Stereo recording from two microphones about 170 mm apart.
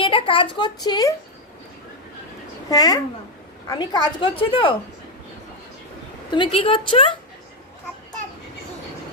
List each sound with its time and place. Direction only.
0.0 s speech: 30° left (ahead or behind)
2.6 s speech: 20° left (ahead or behind)
6.3 s speech: 30° left (ahead or behind)